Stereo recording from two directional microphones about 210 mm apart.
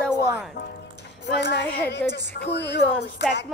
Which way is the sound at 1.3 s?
55° left (ahead or behind).